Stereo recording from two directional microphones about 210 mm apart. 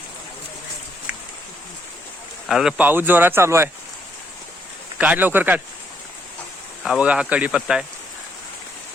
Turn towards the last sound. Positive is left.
turn(degrees=-5)  # may be behind; listen again after turning